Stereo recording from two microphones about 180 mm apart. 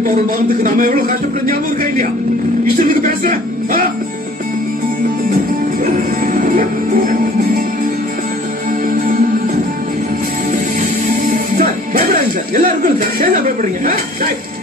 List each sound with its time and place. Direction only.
0.7 s music: 50° right (ahead or behind)
6.3 s music: 45° right (ahead or behind)
10.5 s music: 50° right (ahead or behind)